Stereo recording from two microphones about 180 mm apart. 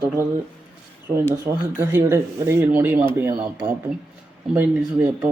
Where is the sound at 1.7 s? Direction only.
15° right (ahead or behind).